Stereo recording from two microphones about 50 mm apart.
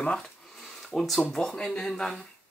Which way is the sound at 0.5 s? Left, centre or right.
Centre.